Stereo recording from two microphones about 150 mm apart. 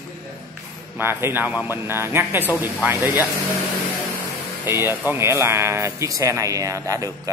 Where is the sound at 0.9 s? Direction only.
15° right (ahead or behind).